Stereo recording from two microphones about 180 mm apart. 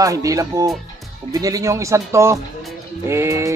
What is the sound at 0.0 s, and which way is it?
Speech, 20° right (ahead or behind).